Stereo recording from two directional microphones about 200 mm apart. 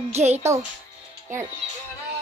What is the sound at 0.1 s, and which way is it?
Speech, 35° right (ahead or behind).